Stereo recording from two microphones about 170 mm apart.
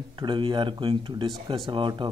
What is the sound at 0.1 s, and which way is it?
Speech, 30° right (ahead or behind).